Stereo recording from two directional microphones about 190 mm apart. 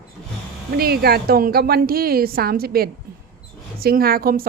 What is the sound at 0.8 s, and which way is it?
A woman's voice, 55° right (ahead or behind).